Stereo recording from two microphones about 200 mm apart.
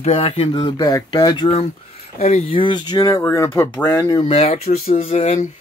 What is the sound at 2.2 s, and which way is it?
Speech, 35° left (ahead or behind).